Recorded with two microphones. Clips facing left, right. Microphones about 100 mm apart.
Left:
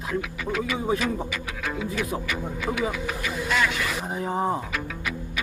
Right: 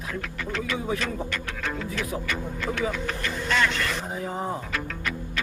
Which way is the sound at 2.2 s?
5° left (ahead or behind).